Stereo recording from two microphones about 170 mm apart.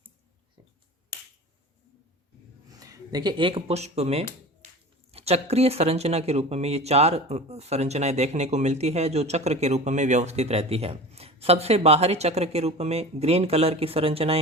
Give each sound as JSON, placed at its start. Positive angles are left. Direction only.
{"t": 2.6, "sound": "speech", "side_deg": -20}